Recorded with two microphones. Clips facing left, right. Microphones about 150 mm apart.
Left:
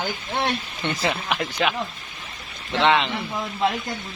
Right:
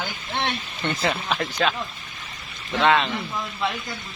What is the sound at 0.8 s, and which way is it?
Speech, 15° left (ahead or behind).